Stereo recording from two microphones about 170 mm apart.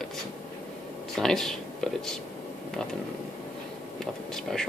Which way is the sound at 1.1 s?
Centre (ahead or behind).